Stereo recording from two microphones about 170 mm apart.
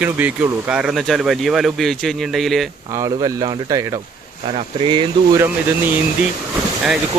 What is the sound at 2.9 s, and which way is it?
Speech, 20° right (ahead or behind).